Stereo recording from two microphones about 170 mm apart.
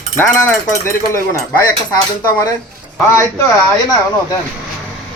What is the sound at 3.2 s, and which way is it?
Speech, 20° left (ahead or behind).